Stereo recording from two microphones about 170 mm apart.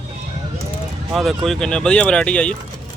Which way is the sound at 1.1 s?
Centre (ahead or behind).